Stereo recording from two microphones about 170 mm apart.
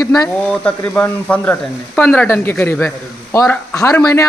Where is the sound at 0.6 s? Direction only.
10° left (ahead or behind).